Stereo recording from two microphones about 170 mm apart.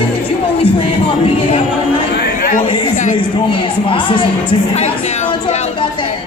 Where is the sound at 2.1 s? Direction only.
60° left (ahead or behind).